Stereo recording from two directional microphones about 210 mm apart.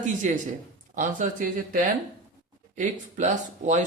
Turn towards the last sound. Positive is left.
turn(degrees=-35)  # may be behind; listen again after turning